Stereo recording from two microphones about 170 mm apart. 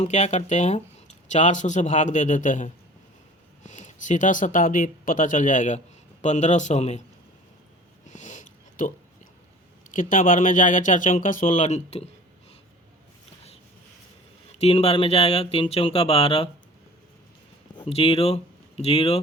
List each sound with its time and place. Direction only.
0.0 s speech: 40° left (ahead or behind)
8.1 s a sound: 45° left (ahead or behind)
9.9 s speech: 50° left (ahead or behind)
14.6 s speech: 35° left (ahead or behind)
17.7 s speech: 35° left (ahead or behind)